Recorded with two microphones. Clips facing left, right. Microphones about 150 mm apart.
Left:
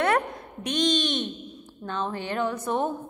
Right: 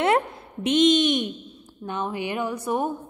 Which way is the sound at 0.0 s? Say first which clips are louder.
Right 2 dB; 25° right (ahead or behind).